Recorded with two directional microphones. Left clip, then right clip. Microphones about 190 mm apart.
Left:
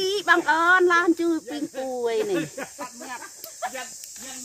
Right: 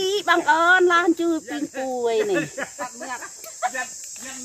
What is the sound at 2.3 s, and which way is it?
Speech, 55° left (ahead or behind).